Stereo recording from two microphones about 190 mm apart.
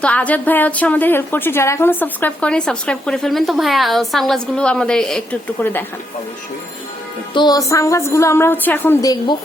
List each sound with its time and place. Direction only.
0.0 s a woman's voice: 5° left (ahead or behind)
7.3 s a woman's voice: 20° left (ahead or behind)